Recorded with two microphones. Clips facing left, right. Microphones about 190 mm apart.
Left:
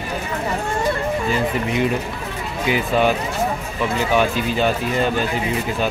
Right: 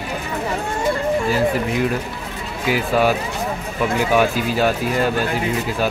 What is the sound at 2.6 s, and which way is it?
Speech, 5° right (ahead or behind).